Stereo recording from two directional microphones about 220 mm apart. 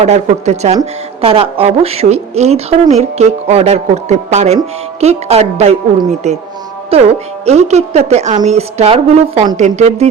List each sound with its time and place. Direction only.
0.0 s speech: 30° right (ahead or behind)